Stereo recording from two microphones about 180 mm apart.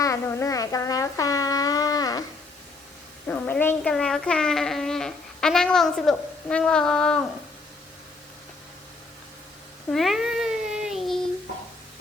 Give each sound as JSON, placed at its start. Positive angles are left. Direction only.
{"t": 0.0, "sound": "a sound", "side_deg": 15}
{"t": 3.2, "sound": "speech", "side_deg": 5}
{"t": 9.9, "sound": "cat", "side_deg": 0}